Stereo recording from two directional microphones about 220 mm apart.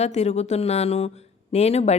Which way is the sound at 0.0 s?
30° left (ahead or behind).